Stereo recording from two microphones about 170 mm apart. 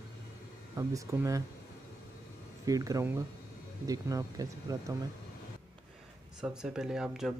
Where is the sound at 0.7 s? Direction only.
20° right (ahead or behind).